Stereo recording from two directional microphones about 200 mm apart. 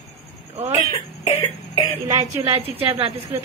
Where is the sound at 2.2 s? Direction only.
30° right (ahead or behind).